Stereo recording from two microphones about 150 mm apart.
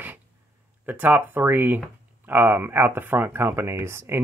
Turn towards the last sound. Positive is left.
turn(degrees=-15)  # may be behind; listen again after turning